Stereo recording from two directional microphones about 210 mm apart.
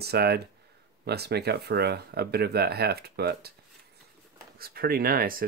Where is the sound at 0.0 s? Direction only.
50° right (ahead or behind).